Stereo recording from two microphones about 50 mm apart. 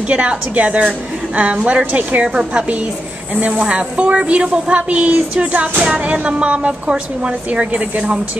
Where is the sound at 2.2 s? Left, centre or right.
Centre.